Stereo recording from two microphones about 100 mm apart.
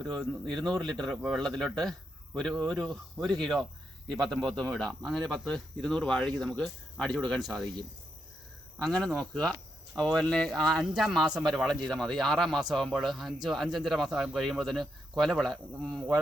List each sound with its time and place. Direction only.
0.0 s speech: 40° right (ahead or behind)
0.4 s speech: 5° left (ahead or behind)
8.8 s speech: 10° left (ahead or behind)